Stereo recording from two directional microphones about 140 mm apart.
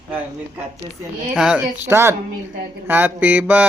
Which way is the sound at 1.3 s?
5° right (ahead or behind).